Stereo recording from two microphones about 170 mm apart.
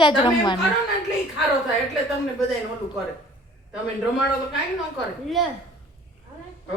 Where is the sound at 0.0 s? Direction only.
30° left (ahead or behind).